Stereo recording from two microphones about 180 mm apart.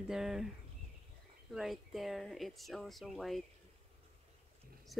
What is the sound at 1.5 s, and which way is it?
Speech, centre (ahead or behind).